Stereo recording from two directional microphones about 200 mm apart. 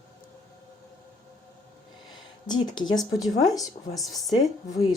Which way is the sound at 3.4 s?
20° left (ahead or behind).